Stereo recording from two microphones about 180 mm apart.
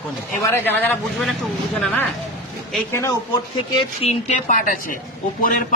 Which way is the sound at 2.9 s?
15° left (ahead or behind).